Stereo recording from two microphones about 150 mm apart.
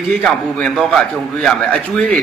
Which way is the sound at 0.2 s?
Centre (ahead or behind).